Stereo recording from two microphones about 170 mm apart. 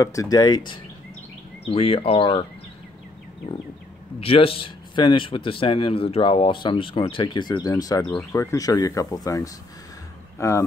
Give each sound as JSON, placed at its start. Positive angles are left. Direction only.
{"t": 0.0, "sound": "speech", "side_deg": 20}
{"t": 4.2, "sound": "speech", "side_deg": 35}